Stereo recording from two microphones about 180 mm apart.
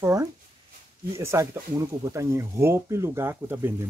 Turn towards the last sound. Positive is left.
turn(degrees=-15)  # may be behind; listen again after turning